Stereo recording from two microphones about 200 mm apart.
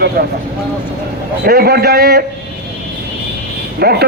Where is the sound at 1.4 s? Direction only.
50° right (ahead or behind).